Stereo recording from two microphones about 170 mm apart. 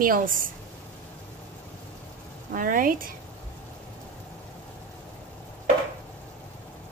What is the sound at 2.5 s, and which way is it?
Speech, 55° right (ahead or behind).